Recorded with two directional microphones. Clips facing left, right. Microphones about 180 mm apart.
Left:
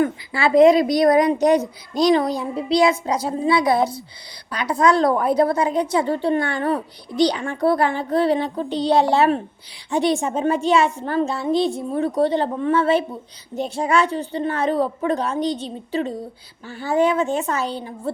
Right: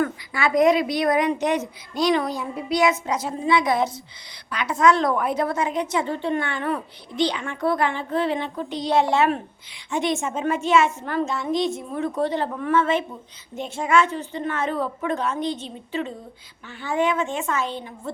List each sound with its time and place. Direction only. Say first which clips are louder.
0.0 s a woman's voice: left 4 dB; 30° left (ahead or behind)